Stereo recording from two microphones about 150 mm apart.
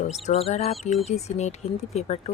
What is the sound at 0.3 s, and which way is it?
A woman's voice, 45° left (ahead or behind).